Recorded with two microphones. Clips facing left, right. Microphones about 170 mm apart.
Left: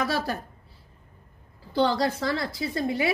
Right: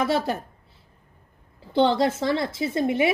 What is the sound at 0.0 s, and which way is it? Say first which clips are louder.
Speech: right 4 dB; 20° right (ahead or behind).